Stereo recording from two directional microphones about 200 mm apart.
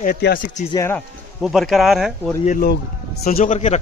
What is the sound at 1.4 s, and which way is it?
Speech, centre (ahead or behind).